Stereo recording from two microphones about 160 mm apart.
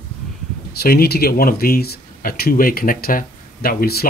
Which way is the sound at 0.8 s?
75° left (ahead or behind).